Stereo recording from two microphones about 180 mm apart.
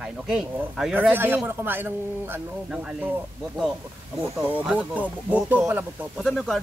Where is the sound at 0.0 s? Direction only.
5° right (ahead or behind).